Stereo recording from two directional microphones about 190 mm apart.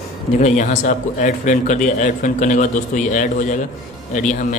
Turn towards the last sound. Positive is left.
turn(degrees=40)  # may be behind; listen again after turning